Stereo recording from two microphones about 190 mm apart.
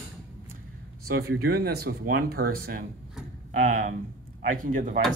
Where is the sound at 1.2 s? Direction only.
55° right (ahead or behind).